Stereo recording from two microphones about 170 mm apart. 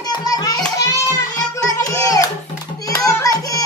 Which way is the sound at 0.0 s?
25° left (ahead or behind).